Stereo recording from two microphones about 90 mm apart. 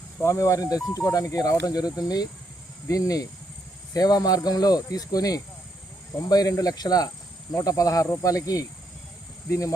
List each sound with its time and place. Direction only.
0.2 s speech: 30° left (ahead or behind)